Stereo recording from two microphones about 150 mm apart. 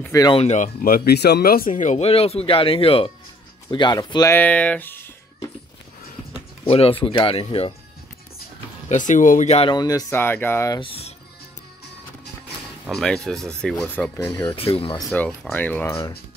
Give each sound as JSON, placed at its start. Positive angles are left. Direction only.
{"t": 0.0, "sound": "speech", "side_deg": 20}
{"t": 0.3, "sound": "speech", "side_deg": 45}
{"t": 0.8, "sound": "speech", "side_deg": 80}
{"t": 3.7, "sound": "speech", "side_deg": 30}
{"t": 4.4, "sound": "speech", "side_deg": 10}
{"t": 6.7, "sound": "speech", "side_deg": 40}
{"t": 8.8, "sound": "speech", "side_deg": 55}
{"t": 9.7, "sound": "speech", "side_deg": 25}
{"t": 10.8, "sound": "speech", "side_deg": 40}
{"t": 12.9, "sound": "speech", "side_deg": 5}
{"t": 14.4, "sound": "speech", "side_deg": 35}
{"t": 15.0, "sound": "speech", "side_deg": 5}
{"t": 15.9, "sound": "speech", "side_deg": 30}